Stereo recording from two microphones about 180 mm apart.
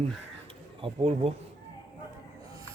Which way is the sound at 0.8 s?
35° right (ahead or behind).